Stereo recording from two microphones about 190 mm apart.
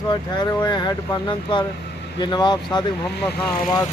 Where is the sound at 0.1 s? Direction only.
25° left (ahead or behind).